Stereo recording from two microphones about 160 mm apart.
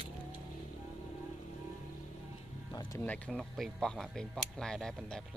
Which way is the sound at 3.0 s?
10° left (ahead or behind).